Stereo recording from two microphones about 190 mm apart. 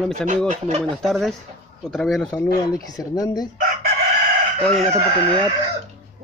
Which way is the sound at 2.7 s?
20° left (ahead or behind).